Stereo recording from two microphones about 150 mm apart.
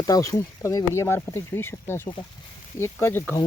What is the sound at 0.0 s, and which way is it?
Speech, 20° left (ahead or behind).